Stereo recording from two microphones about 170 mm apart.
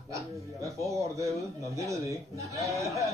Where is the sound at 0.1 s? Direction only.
20° right (ahead or behind).